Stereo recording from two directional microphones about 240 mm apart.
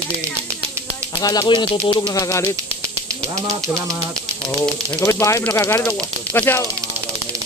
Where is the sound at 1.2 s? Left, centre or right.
Centre.